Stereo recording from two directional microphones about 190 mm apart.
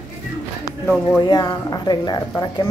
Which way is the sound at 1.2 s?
20° left (ahead or behind).